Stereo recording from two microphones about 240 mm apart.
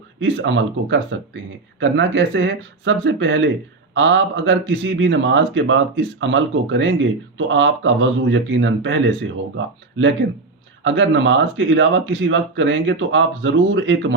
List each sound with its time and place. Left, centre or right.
0.2 s a man's voice: right